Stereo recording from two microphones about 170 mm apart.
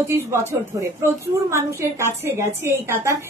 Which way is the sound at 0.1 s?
15° right (ahead or behind).